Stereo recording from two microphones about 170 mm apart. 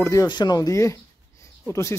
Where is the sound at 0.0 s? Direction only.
20° left (ahead or behind).